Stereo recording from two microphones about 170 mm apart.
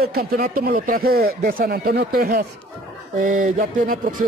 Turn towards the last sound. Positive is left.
turn(degrees=-50)  # may be behind; listen again after turning